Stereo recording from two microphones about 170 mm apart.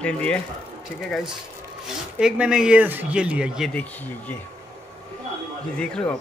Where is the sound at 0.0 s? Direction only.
5° left (ahead or behind).